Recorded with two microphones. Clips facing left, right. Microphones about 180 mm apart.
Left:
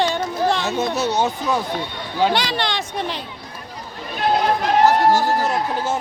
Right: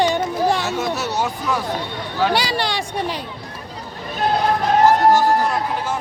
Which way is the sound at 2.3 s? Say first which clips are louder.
Right 1 dB; 10° right (ahead or behind).